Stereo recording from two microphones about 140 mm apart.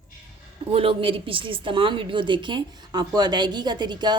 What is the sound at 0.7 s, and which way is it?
A woman's voice, 40° right (ahead or behind).